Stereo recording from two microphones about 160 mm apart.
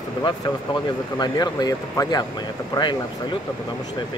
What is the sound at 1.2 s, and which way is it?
Speech, 25° left (ahead or behind).